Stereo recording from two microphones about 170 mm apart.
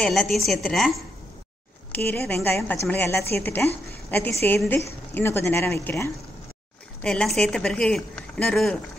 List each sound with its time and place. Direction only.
0.0 s a woman's voice: 5° left (ahead or behind)
2.0 s a woman's voice: 10° left (ahead or behind)
7.0 s a woman's voice: 5° left (ahead or behind)